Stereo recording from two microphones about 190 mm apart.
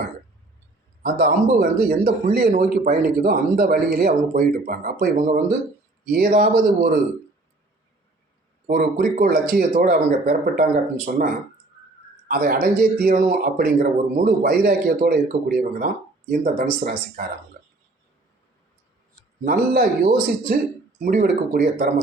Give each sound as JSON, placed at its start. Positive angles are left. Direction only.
{"t": 1.0, "sound": "a man's voice", "side_deg": -55}
{"t": 8.6, "sound": "a man's voice", "side_deg": -45}
{"t": 12.3, "sound": "a man's voice", "side_deg": -50}
{"t": 19.5, "sound": "a man's voice", "side_deg": -50}